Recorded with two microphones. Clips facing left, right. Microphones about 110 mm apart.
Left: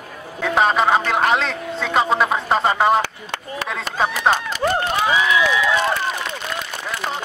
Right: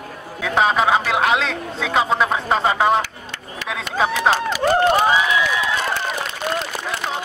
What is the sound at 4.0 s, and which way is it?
Speech, 5° right (ahead or behind).